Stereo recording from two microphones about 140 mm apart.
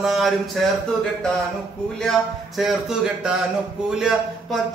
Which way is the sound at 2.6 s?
5° right (ahead or behind).